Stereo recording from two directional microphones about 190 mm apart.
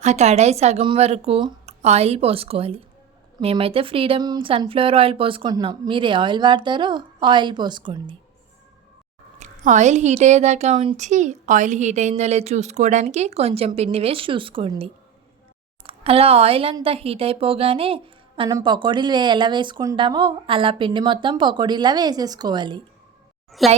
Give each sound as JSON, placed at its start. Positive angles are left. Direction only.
{"t": 0.0, "sound": "a woman's voice", "side_deg": -35}
{"t": 9.4, "sound": "a woman's voice", "side_deg": -40}
{"t": 15.9, "sound": "a woman's voice", "side_deg": -30}
{"t": 23.6, "sound": "a woman's voice", "side_deg": 0}